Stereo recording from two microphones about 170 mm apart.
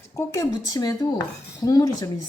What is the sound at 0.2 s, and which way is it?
Chopping, 20° left (ahead or behind).